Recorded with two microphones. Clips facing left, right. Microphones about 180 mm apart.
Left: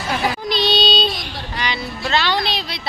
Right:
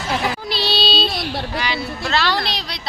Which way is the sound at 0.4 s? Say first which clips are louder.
Left 3 dB; 5° right (ahead or behind).